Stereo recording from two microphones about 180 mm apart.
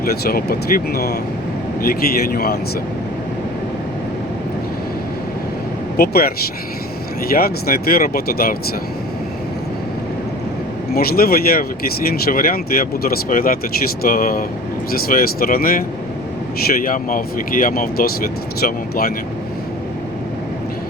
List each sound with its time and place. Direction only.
0.0 s speech: 55° left (ahead or behind)
6.0 s speech: 60° left (ahead or behind)
10.9 s speech: 55° left (ahead or behind)
16.8 s speech: 50° left (ahead or behind)